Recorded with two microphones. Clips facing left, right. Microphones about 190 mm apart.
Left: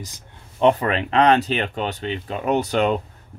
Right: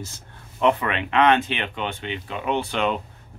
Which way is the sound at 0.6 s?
35° left (ahead or behind).